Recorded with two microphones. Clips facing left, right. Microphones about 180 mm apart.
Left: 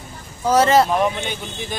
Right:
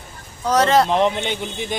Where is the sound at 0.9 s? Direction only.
20° right (ahead or behind).